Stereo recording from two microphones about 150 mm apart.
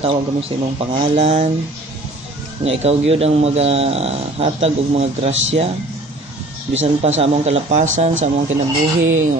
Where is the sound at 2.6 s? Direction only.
40° right (ahead or behind).